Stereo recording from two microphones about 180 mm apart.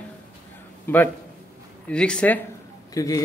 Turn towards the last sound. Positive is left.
turn(degrees=20)  # may be behind; listen again after turning